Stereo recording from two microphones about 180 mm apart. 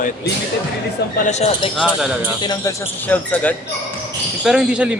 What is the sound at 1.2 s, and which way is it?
Speech, 40° left (ahead or behind).